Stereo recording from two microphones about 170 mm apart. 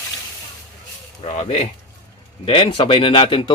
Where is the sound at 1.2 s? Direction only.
40° left (ahead or behind).